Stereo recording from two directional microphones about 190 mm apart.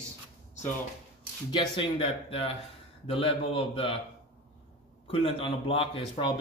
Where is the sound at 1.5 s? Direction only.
25° left (ahead or behind).